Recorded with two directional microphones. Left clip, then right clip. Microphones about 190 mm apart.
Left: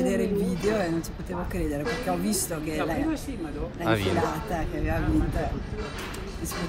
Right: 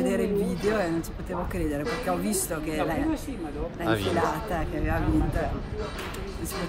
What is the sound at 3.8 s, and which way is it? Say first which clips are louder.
Speech: even; 15° right (ahead or behind).